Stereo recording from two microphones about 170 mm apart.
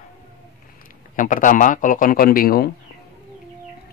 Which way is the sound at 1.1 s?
50° left (ahead or behind).